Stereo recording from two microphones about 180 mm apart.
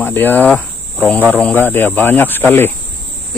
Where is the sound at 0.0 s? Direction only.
10° left (ahead or behind).